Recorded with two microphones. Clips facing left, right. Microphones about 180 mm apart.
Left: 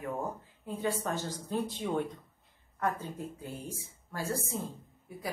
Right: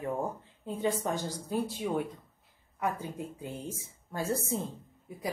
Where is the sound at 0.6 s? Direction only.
20° right (ahead or behind).